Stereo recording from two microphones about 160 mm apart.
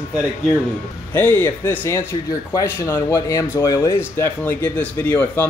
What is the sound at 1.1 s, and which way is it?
Speech, 15° left (ahead or behind).